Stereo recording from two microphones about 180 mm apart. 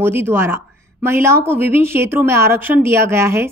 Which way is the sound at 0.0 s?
10° right (ahead or behind).